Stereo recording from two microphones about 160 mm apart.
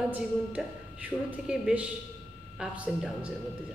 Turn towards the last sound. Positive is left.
turn(degrees=-10)  # may be behind; listen again after turning